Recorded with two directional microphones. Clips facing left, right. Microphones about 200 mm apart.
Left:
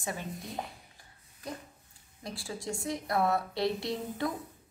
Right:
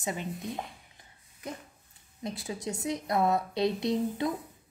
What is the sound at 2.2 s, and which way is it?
A woman's voice, 20° right (ahead or behind).